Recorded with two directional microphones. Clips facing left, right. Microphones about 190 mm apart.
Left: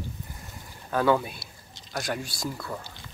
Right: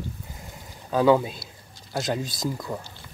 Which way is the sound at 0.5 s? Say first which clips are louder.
Right 3 dB; 15° right (ahead or behind).